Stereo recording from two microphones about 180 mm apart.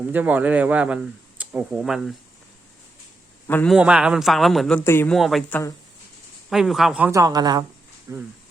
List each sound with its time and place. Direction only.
0.1 s speech: 10° right (ahead or behind)
3.4 s a man's voice: 10° left (ahead or behind)
3.7 s speech: 5° right (ahead or behind)
4.8 s speech: 15° left (ahead or behind)
5.1 s speech: centre (ahead or behind)
6.5 s speech: centre (ahead or behind)
7.1 s a woman's voice: 20° right (ahead or behind)